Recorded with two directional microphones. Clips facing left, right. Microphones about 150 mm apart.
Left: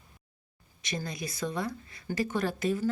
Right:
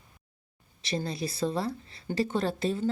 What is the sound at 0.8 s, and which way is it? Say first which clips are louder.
Speech: right 4 dB; 30° right (ahead or behind).